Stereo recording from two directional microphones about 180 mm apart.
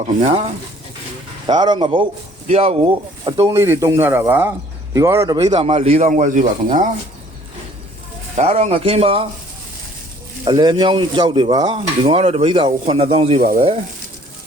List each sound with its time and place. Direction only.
0.2 s speech: 35° right (ahead or behind)
1.5 s speech: 25° right (ahead or behind)
3.5 s speech: 15° right (ahead or behind)
5.5 s speech: 35° right (ahead or behind)
8.4 s speech: 35° right (ahead or behind)
10.4 s speech: 25° right (ahead or behind)
13.4 s speech: 55° right (ahead or behind)